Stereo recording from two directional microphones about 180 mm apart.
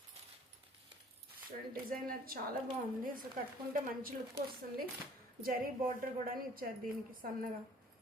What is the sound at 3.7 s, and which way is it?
Speech, 50° right (ahead or behind).